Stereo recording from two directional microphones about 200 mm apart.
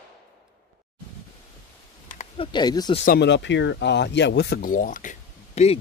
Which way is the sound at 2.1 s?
35° left (ahead or behind).